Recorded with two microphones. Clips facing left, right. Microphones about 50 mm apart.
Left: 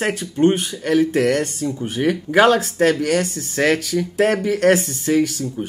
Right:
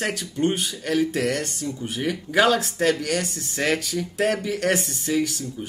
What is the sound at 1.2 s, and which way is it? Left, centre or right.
Speech, centre.